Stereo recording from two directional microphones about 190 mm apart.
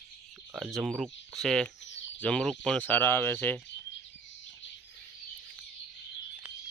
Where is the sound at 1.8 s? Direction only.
70° left (ahead or behind).